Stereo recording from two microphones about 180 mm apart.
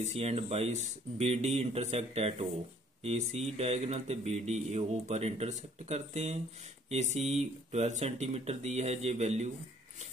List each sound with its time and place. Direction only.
0.0 s speech: 35° right (ahead or behind)